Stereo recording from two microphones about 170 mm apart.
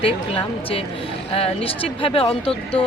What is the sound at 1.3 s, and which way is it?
Speech, 35° left (ahead or behind).